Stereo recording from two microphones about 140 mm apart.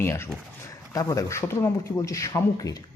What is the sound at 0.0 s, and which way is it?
A man's voice, 20° left (ahead or behind).